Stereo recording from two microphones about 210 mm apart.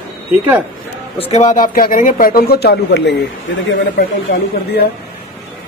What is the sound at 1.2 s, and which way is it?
Speech, 30° left (ahead or behind).